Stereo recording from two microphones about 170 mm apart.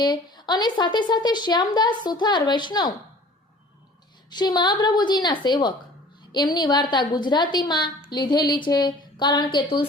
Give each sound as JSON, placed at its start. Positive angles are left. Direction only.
{"t": 0.0, "sound": "speech", "side_deg": 25}
{"t": 4.3, "sound": "speech", "side_deg": 25}